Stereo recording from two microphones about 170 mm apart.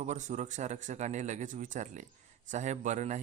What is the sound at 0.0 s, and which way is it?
A man's voice, 45° right (ahead or behind).